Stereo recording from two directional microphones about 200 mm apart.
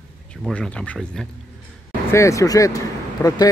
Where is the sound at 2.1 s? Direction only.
15° left (ahead or behind).